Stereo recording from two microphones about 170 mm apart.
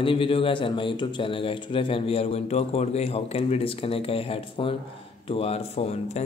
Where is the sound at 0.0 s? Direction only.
30° left (ahead or behind).